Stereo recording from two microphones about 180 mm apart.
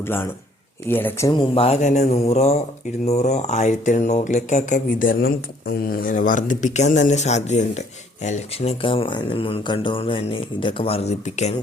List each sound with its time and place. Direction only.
0.9 s speech: 10° left (ahead or behind)
1.3 s speech: 30° left (ahead or behind)